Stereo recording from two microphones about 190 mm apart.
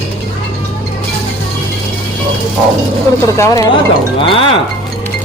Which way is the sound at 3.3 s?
15° left (ahead or behind).